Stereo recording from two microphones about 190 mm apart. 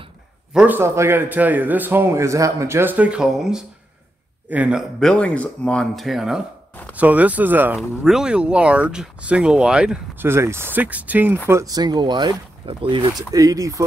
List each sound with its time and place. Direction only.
0.5 s a man's voice: 5° right (ahead or behind)